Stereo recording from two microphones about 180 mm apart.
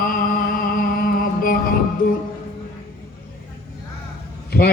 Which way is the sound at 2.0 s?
50° left (ahead or behind).